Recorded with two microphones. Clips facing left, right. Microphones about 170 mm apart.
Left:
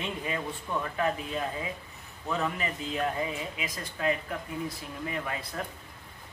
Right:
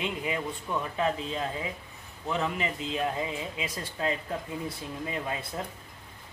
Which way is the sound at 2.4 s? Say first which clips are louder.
Right 1 dB; 20° right (ahead or behind).